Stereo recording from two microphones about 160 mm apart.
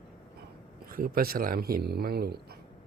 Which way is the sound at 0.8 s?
65° right (ahead or behind).